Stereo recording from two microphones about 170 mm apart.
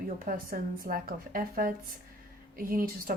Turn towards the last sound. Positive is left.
turn(degrees=-55)  # may be behind; listen again after turning